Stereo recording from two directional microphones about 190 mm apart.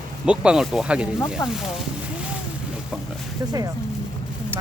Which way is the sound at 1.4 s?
15° left (ahead or behind).